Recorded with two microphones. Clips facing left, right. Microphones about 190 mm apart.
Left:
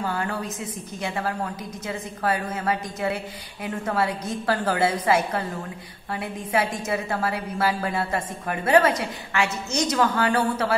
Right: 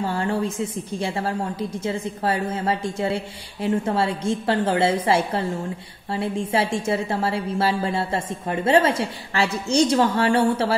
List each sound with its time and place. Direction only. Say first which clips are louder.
0.0 s a woman's voice: right 4 dB; 25° right (ahead or behind)